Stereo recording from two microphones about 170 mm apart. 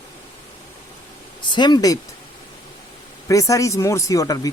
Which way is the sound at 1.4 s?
25° left (ahead or behind).